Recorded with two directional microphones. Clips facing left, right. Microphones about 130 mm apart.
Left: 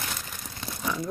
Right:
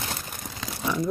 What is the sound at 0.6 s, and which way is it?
Crumpling, 90° right.